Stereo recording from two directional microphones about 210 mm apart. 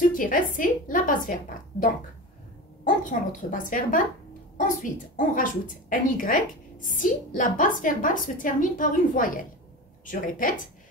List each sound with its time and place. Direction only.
0.0 s a woman's voice: 40° left (ahead or behind)